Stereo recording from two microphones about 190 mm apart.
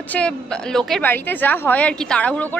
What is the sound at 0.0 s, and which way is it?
A woman's voice, 5° left (ahead or behind).